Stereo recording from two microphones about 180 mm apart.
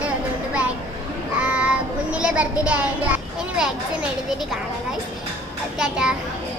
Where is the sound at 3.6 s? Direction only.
5° right (ahead or behind).